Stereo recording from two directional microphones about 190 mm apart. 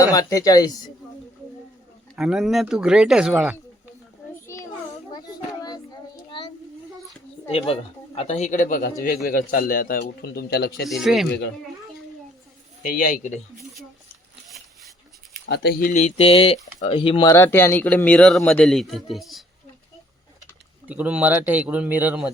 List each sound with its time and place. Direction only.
0.0 s speech: 20° left (ahead or behind)
2.1 s speech: centre (ahead or behind)
4.4 s children playing: 15° left (ahead or behind)
6.3 s a sound: 25° left (ahead or behind)
7.4 s a woman's voice: 30° left (ahead or behind); by 10.8 s 55° left (ahead or behind)
10.8 s speech: centre (ahead or behind)
12.8 s a man's voice: 50° left (ahead or behind)
15.4 s speech: 60° left (ahead or behind)
15.9 s speech: 40° left (ahead or behind)
17.2 s speech: 15° left (ahead or behind)
20.8 s a man's voice: 10° right (ahead or behind)